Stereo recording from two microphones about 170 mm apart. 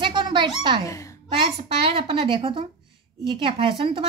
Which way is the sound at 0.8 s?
20° left (ahead or behind).